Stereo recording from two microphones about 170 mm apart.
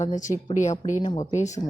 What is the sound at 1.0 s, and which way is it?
Mantra, 25° left (ahead or behind).